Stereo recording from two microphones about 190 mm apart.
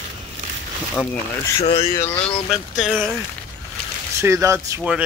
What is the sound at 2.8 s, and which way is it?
Speech, centre (ahead or behind).